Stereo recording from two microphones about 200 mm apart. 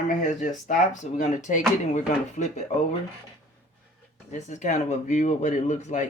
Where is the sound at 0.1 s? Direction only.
40° left (ahead or behind).